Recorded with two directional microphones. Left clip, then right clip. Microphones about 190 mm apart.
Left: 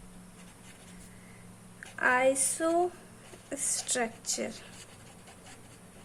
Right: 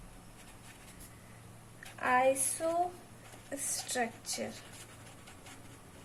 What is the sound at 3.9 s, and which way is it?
Speech, 30° left (ahead or behind).